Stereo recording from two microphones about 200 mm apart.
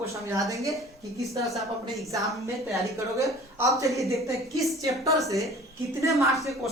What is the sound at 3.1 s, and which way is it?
A woman's voice, 15° right (ahead or behind).